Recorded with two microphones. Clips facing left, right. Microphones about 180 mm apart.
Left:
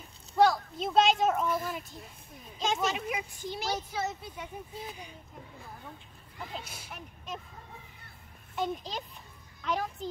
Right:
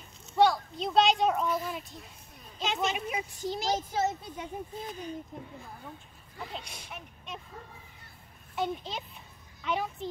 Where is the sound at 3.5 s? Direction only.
40° right (ahead or behind).